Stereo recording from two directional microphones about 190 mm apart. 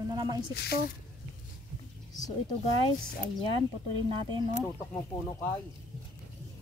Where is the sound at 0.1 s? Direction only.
25° right (ahead or behind).